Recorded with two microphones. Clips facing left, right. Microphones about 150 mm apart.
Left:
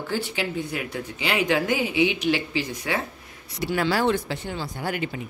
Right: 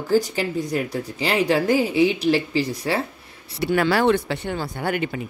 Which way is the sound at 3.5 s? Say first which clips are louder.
Right 4 dB; 60° right (ahead or behind).